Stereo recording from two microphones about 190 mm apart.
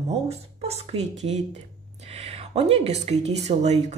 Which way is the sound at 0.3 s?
35° right (ahead or behind).